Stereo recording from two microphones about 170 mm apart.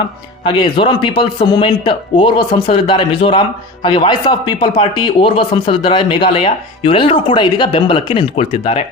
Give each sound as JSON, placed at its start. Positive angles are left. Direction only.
{"t": 0.4, "sound": "speech", "side_deg": 25}